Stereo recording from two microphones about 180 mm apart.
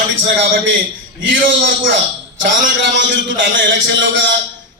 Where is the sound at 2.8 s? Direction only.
90° right.